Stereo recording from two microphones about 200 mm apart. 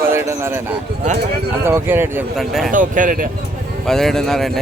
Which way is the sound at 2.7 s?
40° right (ahead or behind).